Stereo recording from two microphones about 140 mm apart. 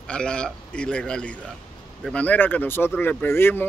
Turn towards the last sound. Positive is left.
turn(degrees=15)  # may be behind; listen again after turning